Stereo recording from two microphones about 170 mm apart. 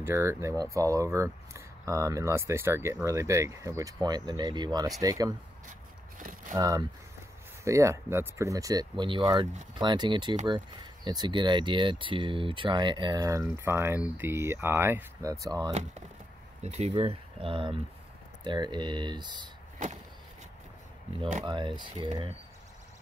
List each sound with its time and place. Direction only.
0.0 s speech: 15° right (ahead or behind)
5.7 s a sound: 50° right (ahead or behind)
6.5 s speech: 20° right (ahead or behind)
16.6 s speech: 40° right (ahead or behind)
21.5 s speech: 25° right (ahead or behind)